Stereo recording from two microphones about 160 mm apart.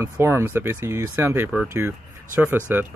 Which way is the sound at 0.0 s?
15° right (ahead or behind).